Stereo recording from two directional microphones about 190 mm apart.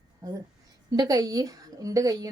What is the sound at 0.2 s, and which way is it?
A woman's voice, 20° right (ahead or behind).